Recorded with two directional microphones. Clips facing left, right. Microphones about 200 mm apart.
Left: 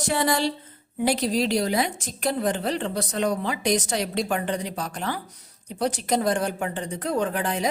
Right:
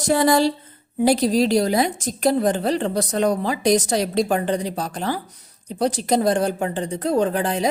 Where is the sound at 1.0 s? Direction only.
40° right (ahead or behind).